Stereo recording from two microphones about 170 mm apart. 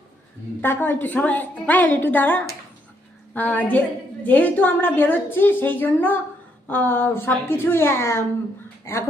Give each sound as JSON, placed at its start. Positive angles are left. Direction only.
{"t": 0.6, "sound": "a woman's voice", "side_deg": 10}